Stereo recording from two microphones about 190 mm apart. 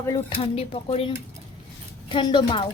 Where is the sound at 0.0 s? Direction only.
25° left (ahead or behind).